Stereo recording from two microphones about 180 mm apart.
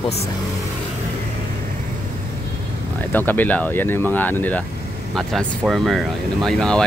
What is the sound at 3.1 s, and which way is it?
Speech, 10° left (ahead or behind).